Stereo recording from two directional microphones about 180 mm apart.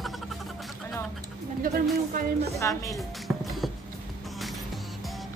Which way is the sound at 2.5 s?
15° left (ahead or behind).